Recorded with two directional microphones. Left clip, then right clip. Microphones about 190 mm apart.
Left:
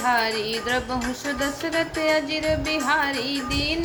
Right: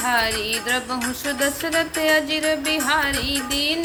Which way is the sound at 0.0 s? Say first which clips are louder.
Right 1 dB; 10° right (ahead or behind).